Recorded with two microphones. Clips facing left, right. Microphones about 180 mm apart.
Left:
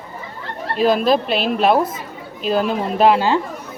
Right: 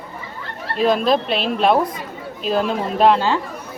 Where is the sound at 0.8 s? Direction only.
Centre (ahead or behind).